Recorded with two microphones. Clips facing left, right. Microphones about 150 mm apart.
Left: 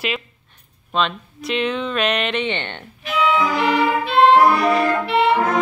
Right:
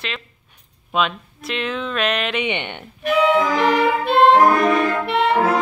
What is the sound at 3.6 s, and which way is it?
Music, 50° right (ahead or behind).